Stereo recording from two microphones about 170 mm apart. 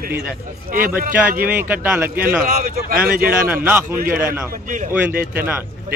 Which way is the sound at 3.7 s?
10° right (ahead or behind).